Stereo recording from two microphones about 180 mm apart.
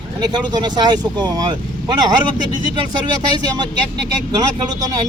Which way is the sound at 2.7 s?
25° right (ahead or behind).